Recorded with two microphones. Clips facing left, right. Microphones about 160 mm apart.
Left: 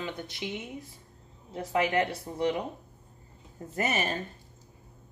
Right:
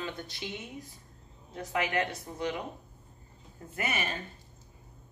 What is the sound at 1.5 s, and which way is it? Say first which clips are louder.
Speech: left 4 dB; 30° left (ahead or behind).